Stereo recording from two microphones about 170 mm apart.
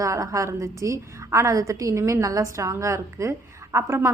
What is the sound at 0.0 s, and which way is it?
A woman's voice, 20° right (ahead or behind).